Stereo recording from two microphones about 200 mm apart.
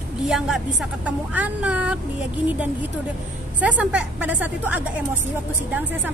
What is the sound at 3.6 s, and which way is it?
A woman's voice, 5° right (ahead or behind).